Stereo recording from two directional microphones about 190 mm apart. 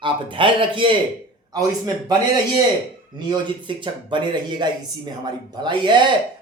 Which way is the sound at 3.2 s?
25° right (ahead or behind).